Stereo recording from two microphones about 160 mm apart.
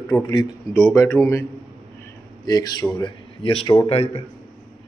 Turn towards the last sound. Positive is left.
turn(degrees=40)  # may be behind; listen again after turning